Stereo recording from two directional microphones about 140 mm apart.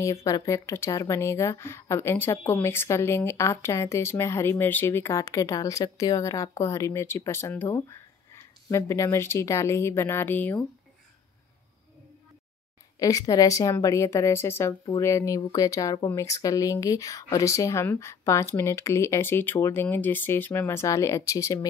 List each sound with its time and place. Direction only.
0.0 s speech: 20° left (ahead or behind)
13.0 s speech: 25° left (ahead or behind)